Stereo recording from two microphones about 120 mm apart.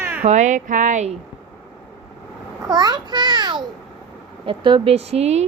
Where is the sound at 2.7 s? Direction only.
35° right (ahead or behind).